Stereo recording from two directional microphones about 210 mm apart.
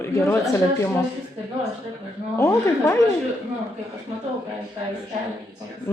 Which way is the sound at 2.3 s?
15° left (ahead or behind).